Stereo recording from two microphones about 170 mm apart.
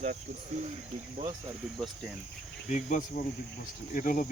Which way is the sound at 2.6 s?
45° left (ahead or behind).